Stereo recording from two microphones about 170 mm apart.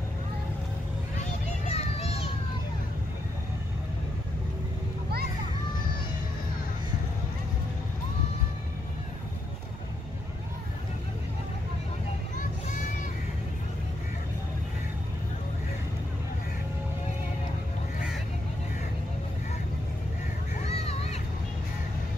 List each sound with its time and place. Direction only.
1.7 s children playing: 40° left (ahead or behind)
12.4 s vehicle: 50° left (ahead or behind)
20.6 s a sound: 40° left (ahead or behind)